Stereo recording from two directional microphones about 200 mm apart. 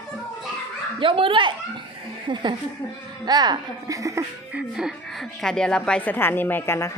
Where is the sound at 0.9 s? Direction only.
25° right (ahead or behind).